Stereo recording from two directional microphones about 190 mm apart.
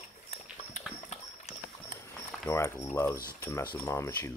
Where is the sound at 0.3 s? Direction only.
35° left (ahead or behind).